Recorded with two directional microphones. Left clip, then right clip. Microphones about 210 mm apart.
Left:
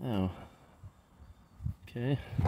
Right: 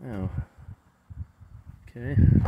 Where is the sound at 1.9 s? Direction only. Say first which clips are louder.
Right 3 dB; 15° left (ahead or behind).